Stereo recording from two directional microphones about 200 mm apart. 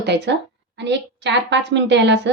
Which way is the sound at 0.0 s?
60° right (ahead or behind).